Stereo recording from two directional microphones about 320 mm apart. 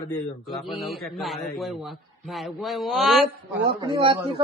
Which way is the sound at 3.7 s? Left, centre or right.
Centre.